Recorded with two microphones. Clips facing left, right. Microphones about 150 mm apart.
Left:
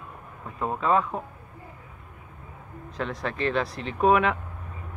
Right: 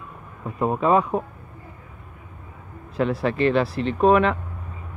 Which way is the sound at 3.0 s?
5° right (ahead or behind).